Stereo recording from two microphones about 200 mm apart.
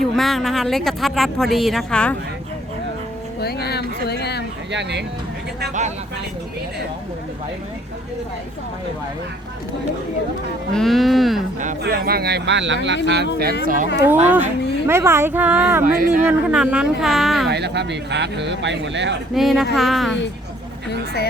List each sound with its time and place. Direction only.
0.0 s speech: centre (ahead or behind)
3.4 s a sound: 55° left (ahead or behind)
4.7 s speech: 60° right (ahead or behind)
10.7 s speech: centre (ahead or behind)
11.8 s speech: 50° right (ahead or behind)
13.4 s speech: 45° right (ahead or behind)
13.8 s speech: 60° left (ahead or behind)
14.3 s speech: 10° right (ahead or behind)
15.8 s speech: 45° right (ahead or behind)
16.2 s speech: 5° right (ahead or behind)
17.5 s speech: 55° right (ahead or behind)
19.3 s speech: centre (ahead or behind)
20.9 s speech: 55° left (ahead or behind)